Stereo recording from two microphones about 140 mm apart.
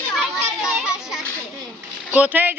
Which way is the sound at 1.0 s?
Centre (ahead or behind).